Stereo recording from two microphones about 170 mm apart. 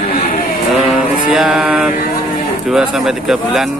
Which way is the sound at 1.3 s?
5° right (ahead or behind).